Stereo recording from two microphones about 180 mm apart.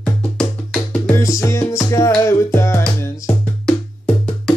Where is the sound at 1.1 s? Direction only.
20° left (ahead or behind).